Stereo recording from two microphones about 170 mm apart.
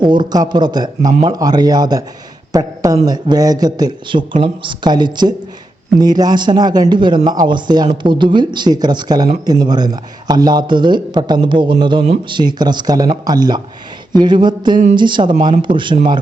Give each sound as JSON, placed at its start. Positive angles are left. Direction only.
{"t": 0.0, "sound": "speech", "side_deg": -25}
{"t": 12.0, "sound": "speech", "side_deg": -40}
{"t": 12.4, "sound": "speech", "side_deg": -25}